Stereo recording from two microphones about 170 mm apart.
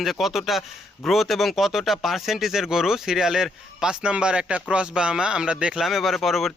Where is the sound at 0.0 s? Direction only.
Centre (ahead or behind).